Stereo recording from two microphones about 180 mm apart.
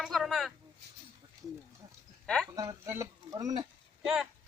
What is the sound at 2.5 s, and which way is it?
Speech, 20° right (ahead or behind).